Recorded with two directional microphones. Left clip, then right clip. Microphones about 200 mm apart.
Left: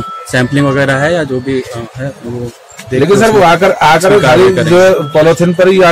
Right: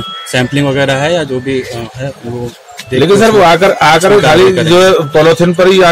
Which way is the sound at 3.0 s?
25° right (ahead or behind).